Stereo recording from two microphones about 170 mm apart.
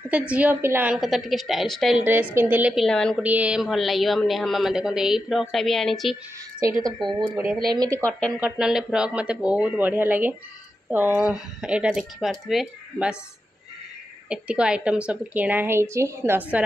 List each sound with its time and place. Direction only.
0.1 s a man's voice: 10° right (ahead or behind)
3.2 s a man's voice: 10° right (ahead or behind)
7.7 s speech: 25° right (ahead or behind)
8.0 s speech: 5° left (ahead or behind)
8.4 s a woman's voice: 5° right (ahead or behind)
14.3 s a woman's voice: 5° right (ahead or behind)